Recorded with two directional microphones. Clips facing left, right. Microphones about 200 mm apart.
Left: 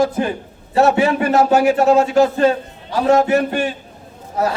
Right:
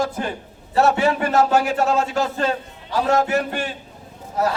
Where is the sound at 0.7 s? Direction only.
15° left (ahead or behind).